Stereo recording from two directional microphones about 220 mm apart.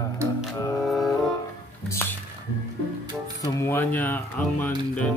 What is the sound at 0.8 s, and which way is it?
Music, centre (ahead or behind).